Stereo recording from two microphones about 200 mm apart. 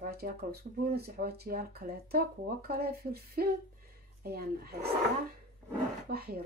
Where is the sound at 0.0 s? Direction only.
50° right (ahead or behind).